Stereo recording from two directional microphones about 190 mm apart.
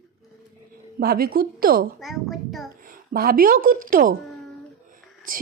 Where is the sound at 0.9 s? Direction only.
50° right (ahead or behind).